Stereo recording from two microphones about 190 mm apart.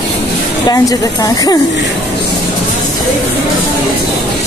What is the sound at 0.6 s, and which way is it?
Speech, 20° left (ahead or behind).